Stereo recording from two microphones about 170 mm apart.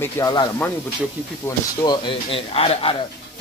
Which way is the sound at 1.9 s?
30° left (ahead or behind).